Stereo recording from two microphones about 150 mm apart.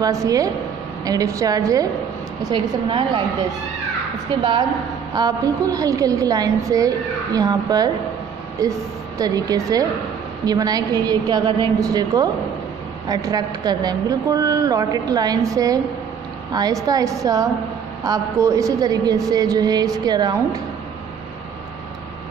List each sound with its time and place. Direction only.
0.0 s a woman's voice: 25° right (ahead or behind)
4.4 s a woman's voice: 30° right (ahead or behind)
9.2 s a woman's voice: 25° right (ahead or behind)